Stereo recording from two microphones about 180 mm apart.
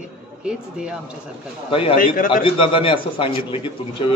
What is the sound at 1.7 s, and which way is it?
A man's voice, 30° left (ahead or behind).